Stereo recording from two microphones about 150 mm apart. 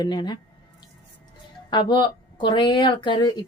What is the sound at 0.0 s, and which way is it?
Speech, 30° left (ahead or behind).